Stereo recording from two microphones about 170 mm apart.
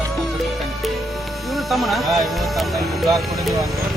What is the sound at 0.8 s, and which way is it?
Music, centre (ahead or behind).